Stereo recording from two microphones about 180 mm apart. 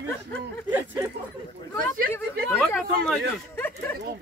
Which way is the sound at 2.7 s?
10° left (ahead or behind).